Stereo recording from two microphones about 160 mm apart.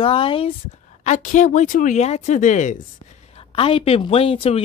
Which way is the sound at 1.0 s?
55° left (ahead or behind).